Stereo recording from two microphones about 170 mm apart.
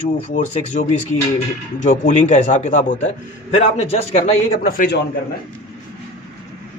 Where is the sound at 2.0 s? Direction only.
45° left (ahead or behind).